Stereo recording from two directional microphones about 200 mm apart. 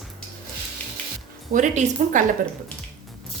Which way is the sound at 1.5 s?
40° right (ahead or behind).